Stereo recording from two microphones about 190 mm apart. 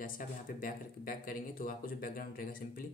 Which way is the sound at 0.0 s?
45° left (ahead or behind).